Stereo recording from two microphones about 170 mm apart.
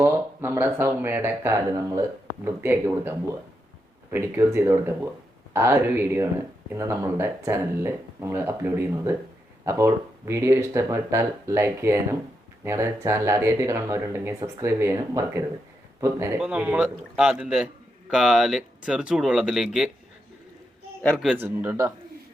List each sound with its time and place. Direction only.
0.0 s speech: 15° right (ahead or behind)
21.0 s a man's voice: 10° left (ahead or behind)
21.2 s speech: 10° right (ahead or behind)